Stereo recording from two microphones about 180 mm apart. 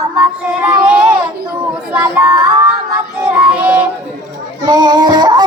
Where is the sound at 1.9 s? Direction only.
10° right (ahead or behind).